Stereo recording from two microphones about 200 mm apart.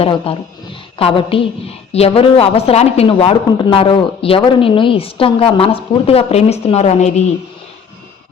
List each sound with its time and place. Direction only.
0.0 s a woman's voice: 25° left (ahead or behind)